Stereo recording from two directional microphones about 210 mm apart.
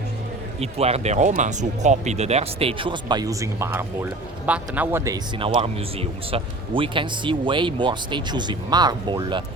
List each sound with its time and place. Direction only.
0.6 s speech: 30° right (ahead or behind); by 5.2 s 10° right (ahead or behind)
5.4 s speech: 30° right (ahead or behind)